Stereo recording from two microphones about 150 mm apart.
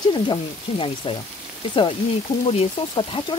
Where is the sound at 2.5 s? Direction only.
35° left (ahead or behind).